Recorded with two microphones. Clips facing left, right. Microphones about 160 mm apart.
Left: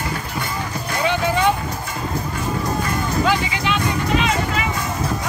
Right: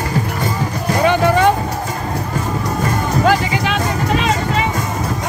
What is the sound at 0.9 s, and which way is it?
Vehicle, 55° right (ahead or behind).